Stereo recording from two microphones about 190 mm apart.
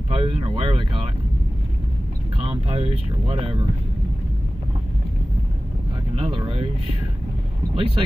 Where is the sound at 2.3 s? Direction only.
30° right (ahead or behind).